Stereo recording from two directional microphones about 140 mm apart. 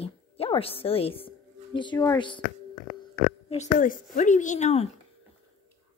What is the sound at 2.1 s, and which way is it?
Speech, 35° left (ahead or behind).